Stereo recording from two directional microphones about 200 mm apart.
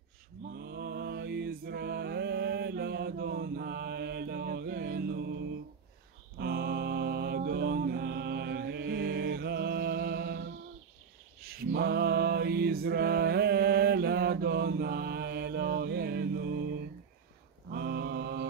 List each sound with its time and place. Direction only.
0.5 s music: 50° right (ahead or behind)
11.4 s mantra: 50° right (ahead or behind)
17.6 s mantra: 55° right (ahead or behind)